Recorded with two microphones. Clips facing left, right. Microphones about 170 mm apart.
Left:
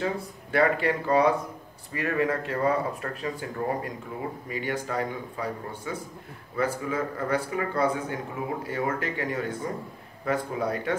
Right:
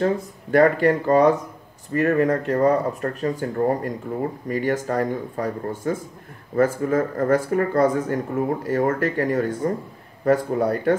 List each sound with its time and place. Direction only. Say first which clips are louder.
0.0 s speech: right 8 dB; 45° right (ahead or behind)